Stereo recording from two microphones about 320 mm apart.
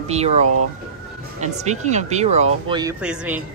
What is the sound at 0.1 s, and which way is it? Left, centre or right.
Speech, centre.